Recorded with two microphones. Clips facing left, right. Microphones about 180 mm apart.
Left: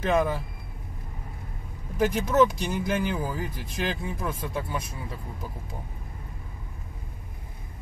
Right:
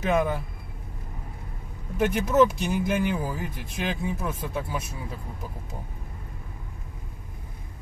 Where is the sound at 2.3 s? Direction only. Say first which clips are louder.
Right 2 dB; 5° right (ahead or behind).